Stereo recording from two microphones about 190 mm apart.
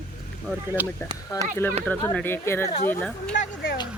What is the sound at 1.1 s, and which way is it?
Speech, 25° right (ahead or behind).